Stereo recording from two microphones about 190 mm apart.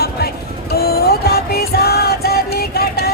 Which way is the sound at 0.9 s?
55° left (ahead or behind).